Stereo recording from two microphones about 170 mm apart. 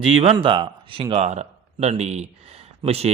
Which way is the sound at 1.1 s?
40° right (ahead or behind).